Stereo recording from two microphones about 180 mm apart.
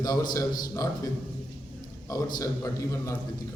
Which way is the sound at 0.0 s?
20° left (ahead or behind).